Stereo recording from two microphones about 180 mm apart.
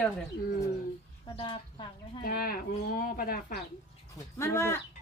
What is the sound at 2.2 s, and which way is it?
Speech, 55° left (ahead or behind).